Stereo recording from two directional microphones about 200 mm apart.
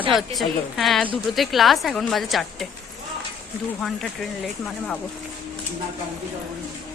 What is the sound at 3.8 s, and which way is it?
A woman's voice, centre (ahead or behind).